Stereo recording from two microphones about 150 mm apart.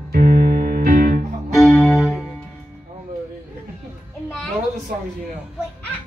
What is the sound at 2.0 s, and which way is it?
Music, 5° right (ahead or behind).